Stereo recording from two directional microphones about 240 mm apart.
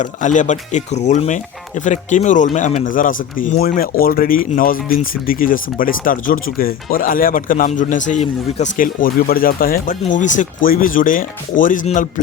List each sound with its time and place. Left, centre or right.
0.0 s speech: left